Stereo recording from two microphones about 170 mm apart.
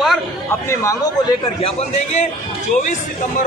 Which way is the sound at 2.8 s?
50° left (ahead or behind).